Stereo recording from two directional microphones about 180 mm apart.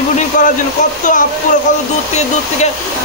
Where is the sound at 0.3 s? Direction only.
45° left (ahead or behind).